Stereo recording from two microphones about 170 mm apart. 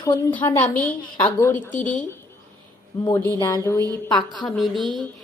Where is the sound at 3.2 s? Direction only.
20° left (ahead or behind).